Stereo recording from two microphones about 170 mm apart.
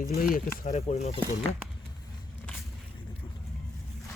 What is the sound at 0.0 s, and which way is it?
Speech, 60° left (ahead or behind).